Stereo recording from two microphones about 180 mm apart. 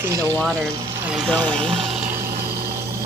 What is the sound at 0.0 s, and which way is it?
Speech, 20° right (ahead or behind).